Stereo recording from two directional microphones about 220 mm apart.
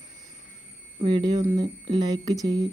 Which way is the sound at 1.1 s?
20° right (ahead or behind).